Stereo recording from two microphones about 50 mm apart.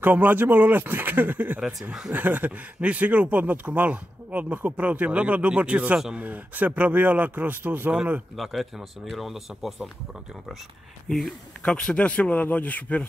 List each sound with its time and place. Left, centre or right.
0.0 s speech: right
7.9 s speech: right
8.4 s speech: centre
11.1 s speech: centre; by 13.0 s left